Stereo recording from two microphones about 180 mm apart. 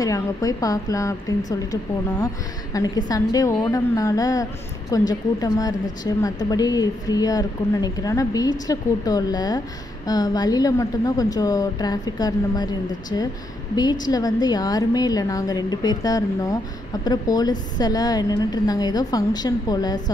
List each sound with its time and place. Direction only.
0.0 s a woman's voice: 20° left (ahead or behind)
13.7 s a woman's voice: 20° left (ahead or behind)